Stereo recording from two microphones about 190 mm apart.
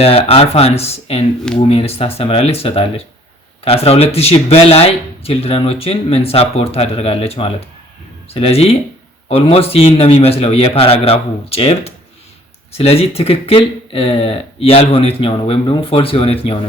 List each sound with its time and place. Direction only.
0.0 s speech: 30° left (ahead or behind)